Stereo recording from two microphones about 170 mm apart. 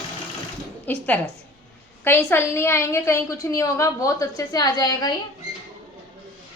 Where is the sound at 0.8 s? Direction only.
10° left (ahead or behind).